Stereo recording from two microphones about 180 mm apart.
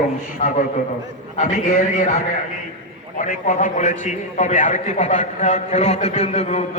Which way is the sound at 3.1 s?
45° left (ahead or behind).